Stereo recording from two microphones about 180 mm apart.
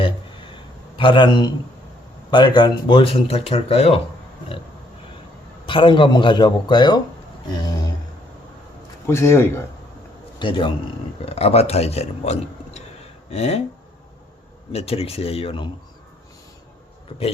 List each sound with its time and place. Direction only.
0.9 s a man's voice: 25° left (ahead or behind)
5.6 s a man's voice: 30° left (ahead or behind)
9.0 s speech: 15° left (ahead or behind)
10.4 s a man's voice: 25° left (ahead or behind)
14.7 s speech: 35° left (ahead or behind)